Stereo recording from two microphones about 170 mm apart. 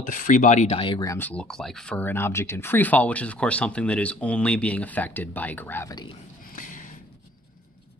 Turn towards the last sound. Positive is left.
turn(degrees=50)  # may be behind; listen again after turning